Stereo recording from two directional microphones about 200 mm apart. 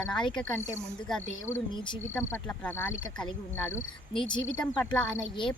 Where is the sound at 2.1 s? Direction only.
5° left (ahead or behind).